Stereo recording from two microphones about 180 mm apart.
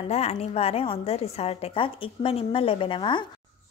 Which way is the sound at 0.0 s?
35° left (ahead or behind).